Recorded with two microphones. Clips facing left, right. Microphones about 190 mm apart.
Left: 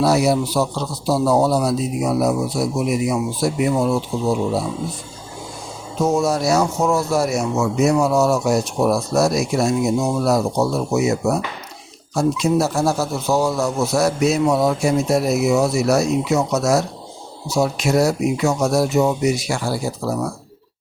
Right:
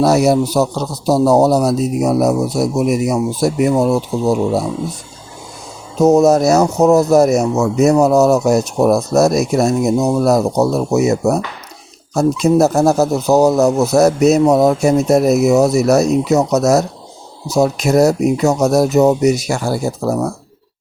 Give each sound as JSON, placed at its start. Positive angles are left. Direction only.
{"t": 0.0, "sound": "a man's voice", "side_deg": -45}
{"t": 6.0, "sound": "speech", "side_deg": -40}